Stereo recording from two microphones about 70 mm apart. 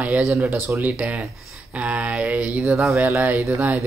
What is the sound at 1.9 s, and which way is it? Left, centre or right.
Speech, centre.